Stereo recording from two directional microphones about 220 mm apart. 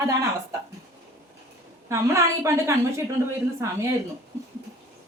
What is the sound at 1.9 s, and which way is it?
A woman's voice, 15° right (ahead or behind).